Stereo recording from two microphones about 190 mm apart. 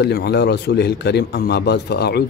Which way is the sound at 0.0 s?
60° left (ahead or behind).